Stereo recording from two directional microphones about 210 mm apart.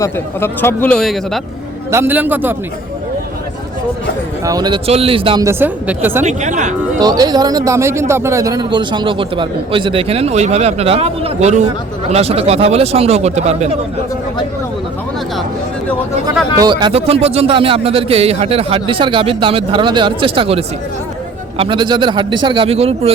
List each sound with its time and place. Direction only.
0.0 s a man's voice: 10° left (ahead or behind)
1.9 s speech: 10° right (ahead or behind)
4.4 s speech: 20° right (ahead or behind)
6.2 s speech: 35° right (ahead or behind)
7.0 s speech: 20° right (ahead or behind)
16.6 s speech: 20° right (ahead or behind)